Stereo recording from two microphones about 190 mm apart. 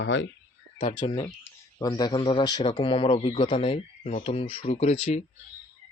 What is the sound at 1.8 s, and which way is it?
A man's voice, 20° left (ahead or behind).